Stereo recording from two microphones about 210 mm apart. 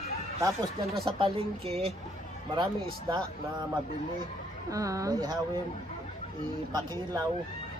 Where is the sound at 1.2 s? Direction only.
25° right (ahead or behind).